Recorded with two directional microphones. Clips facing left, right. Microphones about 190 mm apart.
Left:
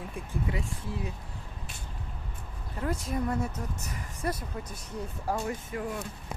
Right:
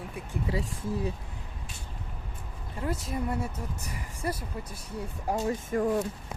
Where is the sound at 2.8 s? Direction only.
5° right (ahead or behind).